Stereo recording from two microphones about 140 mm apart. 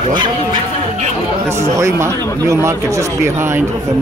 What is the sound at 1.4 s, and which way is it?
Speech, 20° right (ahead or behind).